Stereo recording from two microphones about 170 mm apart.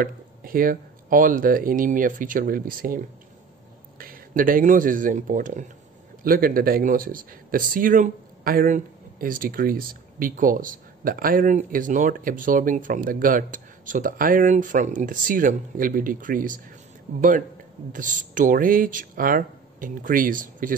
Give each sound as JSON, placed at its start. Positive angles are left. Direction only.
{"t": 0.0, "sound": "speech", "side_deg": -60}
{"t": 4.0, "sound": "speech", "side_deg": -55}
{"t": 17.1, "sound": "speech", "side_deg": -40}